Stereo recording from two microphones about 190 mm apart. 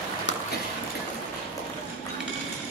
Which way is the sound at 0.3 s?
70° left (ahead or behind).